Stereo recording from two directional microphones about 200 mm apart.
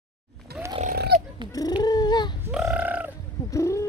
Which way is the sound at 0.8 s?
50° right (ahead or behind).